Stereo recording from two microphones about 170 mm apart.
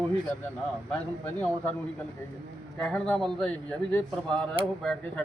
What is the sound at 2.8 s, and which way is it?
A man's voice, 5° left (ahead or behind).